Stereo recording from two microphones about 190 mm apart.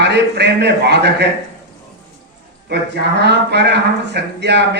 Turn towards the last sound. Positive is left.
turn(degrees=-65)  # may be behind; listen again after turning